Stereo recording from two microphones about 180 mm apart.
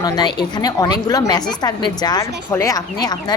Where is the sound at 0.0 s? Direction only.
20° left (ahead or behind).